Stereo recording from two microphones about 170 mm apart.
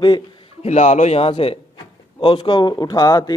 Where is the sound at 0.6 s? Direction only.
40° left (ahead or behind).